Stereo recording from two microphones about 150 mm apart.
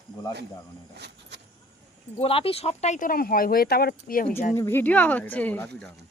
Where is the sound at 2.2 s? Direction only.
40° left (ahead or behind); by 4.3 s 70° left (ahead or behind).